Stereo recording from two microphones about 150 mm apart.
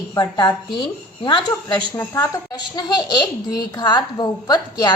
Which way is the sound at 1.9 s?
20° left (ahead or behind).